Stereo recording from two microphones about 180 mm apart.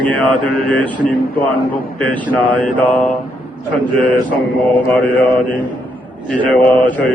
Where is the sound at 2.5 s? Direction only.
10° left (ahead or behind).